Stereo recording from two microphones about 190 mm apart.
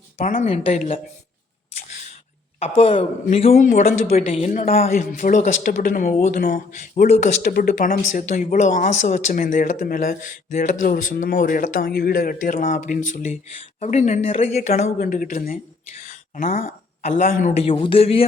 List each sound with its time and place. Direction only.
0.2 s speech: 45° left (ahead or behind)
0.4 s speech: 30° left (ahead or behind)
2.6 s a woman's voice: 30° left (ahead or behind)
4.9 s speech: 45° left (ahead or behind)